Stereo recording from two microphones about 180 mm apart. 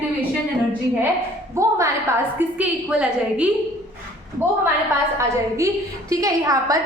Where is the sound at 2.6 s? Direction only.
5° right (ahead or behind).